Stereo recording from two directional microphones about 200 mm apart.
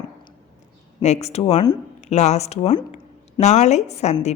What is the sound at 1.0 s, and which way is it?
Speech, 35° left (ahead or behind).